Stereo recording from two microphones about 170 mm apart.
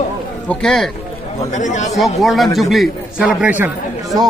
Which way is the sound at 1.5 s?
45° left (ahead or behind).